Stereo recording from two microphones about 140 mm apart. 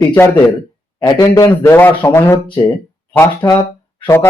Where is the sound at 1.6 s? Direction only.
15° left (ahead or behind).